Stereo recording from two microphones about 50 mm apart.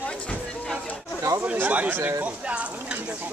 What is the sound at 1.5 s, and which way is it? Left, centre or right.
A man's voice, right.